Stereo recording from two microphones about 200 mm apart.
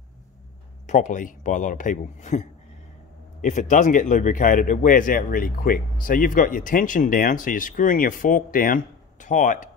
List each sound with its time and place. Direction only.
0.8 s a man's voice: 35° left (ahead or behind)